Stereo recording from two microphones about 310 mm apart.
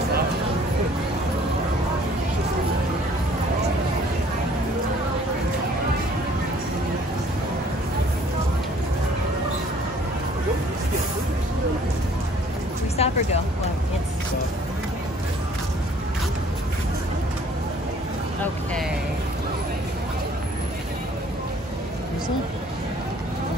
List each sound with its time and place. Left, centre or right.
12.9 s music: centre